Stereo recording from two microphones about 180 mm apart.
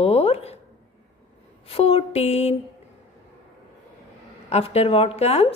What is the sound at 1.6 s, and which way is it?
Speech, 35° left (ahead or behind).